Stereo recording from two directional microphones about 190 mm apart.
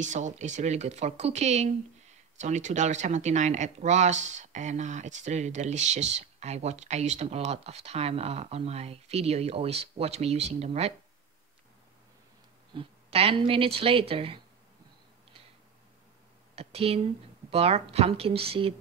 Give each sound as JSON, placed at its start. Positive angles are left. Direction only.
{"t": 0.0, "sound": "speech", "side_deg": -40}
{"t": 12.7, "sound": "speech", "side_deg": -30}
{"t": 16.5, "sound": "speech", "side_deg": -30}